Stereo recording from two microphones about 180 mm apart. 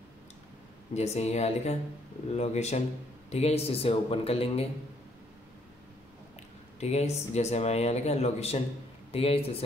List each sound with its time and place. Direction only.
0.9 s speech: 35° left (ahead or behind)
6.8 s speech: 35° left (ahead or behind)